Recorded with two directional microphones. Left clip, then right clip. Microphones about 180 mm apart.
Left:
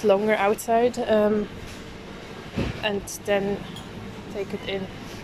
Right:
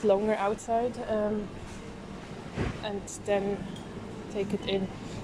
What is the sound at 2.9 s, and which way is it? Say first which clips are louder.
Speech: left 5 dB; 5° left (ahead or behind).